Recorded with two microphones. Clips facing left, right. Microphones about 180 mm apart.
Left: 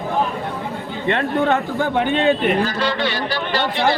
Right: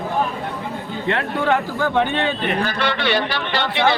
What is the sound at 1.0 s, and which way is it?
Speech, 20° left (ahead or behind).